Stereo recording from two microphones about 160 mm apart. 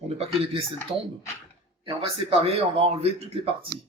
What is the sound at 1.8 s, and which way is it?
A man's voice, 35° right (ahead or behind).